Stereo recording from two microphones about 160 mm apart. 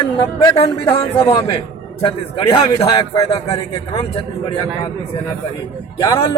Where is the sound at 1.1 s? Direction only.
35° left (ahead or behind).